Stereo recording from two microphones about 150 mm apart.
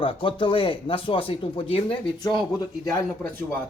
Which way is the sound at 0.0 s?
35° left (ahead or behind).